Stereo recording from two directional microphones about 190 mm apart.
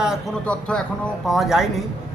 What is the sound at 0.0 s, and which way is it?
A man's voice, centre (ahead or behind).